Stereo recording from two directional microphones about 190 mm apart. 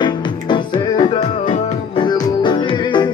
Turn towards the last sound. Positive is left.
turn(degrees=25)  # may be behind; listen again after turning